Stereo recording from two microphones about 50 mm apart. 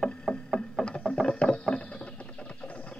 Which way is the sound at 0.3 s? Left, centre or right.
Centre.